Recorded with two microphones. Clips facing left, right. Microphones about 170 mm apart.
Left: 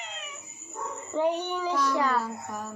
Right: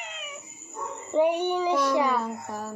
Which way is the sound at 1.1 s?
15° right (ahead or behind).